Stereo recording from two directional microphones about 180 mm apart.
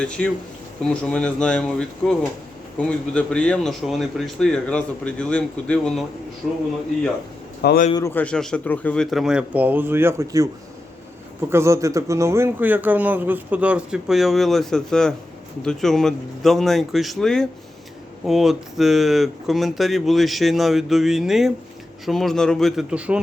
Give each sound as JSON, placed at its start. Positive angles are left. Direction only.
{"t": 0.2, "sound": "a man's voice", "side_deg": 5}
{"t": 7.6, "sound": "a man's voice", "side_deg": 65}
{"t": 7.9, "sound": "a man's voice", "side_deg": 15}
{"t": 11.5, "sound": "a man's voice", "side_deg": -15}